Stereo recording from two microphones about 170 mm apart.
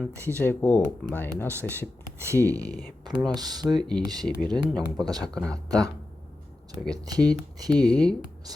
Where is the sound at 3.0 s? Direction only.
Centre (ahead or behind).